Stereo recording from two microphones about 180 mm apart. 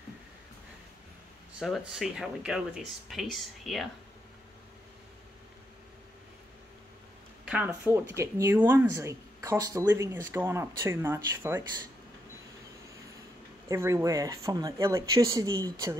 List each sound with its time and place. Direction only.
1.6 s speech: centre (ahead or behind)
7.4 s speech: 10° right (ahead or behind)
13.7 s speech: 15° right (ahead or behind)